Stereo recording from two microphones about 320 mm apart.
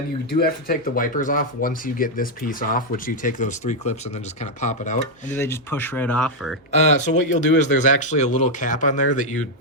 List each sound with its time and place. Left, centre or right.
0.3 s speech: left
5.3 s speech: centre
6.7 s speech: left